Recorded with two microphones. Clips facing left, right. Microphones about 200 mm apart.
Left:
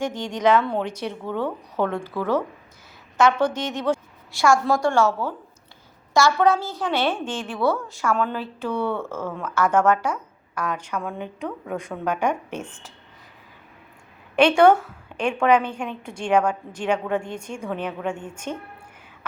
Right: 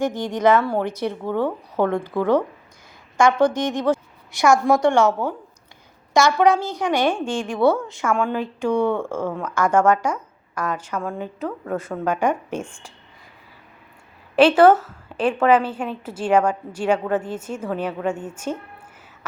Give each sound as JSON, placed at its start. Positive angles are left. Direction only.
{"t": 0.0, "sound": "a woman's voice", "side_deg": -10}
{"t": 10.5, "sound": "a woman's voice", "side_deg": 10}
{"t": 14.3, "sound": "a woman's voice", "side_deg": -5}